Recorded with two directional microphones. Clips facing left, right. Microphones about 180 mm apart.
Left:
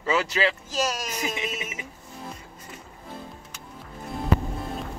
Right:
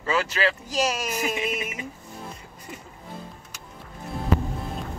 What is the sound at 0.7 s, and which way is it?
Speech, 10° right (ahead or behind).